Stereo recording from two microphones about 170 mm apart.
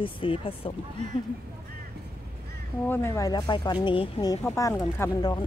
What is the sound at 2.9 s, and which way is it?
Speech, 15° left (ahead or behind).